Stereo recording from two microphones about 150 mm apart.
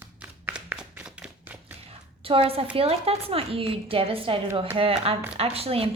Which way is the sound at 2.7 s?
40° right (ahead or behind).